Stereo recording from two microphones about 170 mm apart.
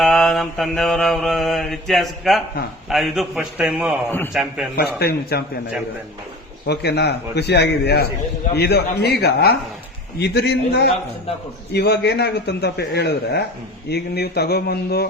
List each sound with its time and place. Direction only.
0.0 s mantra: 5° left (ahead or behind)
4.8 s speech: 70° left (ahead or behind)
6.7 s speech: 75° left (ahead or behind)